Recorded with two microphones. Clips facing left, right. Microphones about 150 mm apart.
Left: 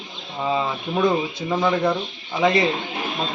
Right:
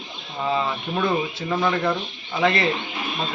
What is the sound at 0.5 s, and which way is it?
A man's voice, 15° left (ahead or behind).